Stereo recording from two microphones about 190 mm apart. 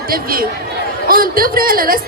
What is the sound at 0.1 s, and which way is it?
Speech, 50° right (ahead or behind).